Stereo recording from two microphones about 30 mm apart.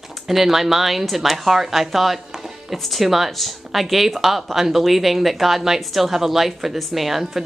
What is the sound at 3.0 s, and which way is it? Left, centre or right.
Speech, centre.